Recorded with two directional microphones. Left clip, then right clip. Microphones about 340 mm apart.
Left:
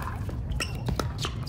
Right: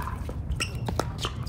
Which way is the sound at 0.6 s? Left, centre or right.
Right.